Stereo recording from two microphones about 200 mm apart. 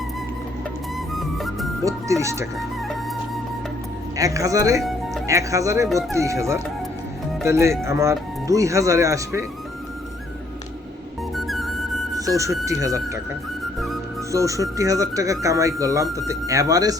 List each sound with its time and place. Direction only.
1.1 s music: centre (ahead or behind)
1.8 s speech: 15° right (ahead or behind)
4.2 s speech: 15° right (ahead or behind)
4.8 s music: centre (ahead or behind)
5.2 s speech: 15° right (ahead or behind)
11.3 s music: centre (ahead or behind)
12.1 s speech: 15° right (ahead or behind)
14.3 s speech: 15° right (ahead or behind)